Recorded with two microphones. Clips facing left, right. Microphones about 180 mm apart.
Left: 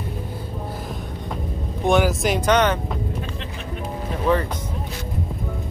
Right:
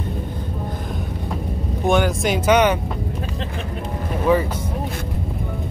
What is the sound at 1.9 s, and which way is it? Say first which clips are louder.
Speech: even; centre (ahead or behind).